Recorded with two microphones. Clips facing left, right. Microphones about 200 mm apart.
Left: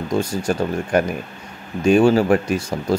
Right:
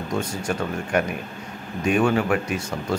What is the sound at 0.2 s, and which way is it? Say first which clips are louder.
Speech: left 5 dB; 35° left (ahead or behind).